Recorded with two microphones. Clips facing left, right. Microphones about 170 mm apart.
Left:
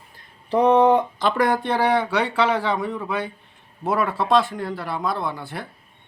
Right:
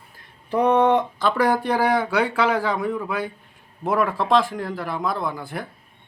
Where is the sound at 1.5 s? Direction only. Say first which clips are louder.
Even; 5° right (ahead or behind).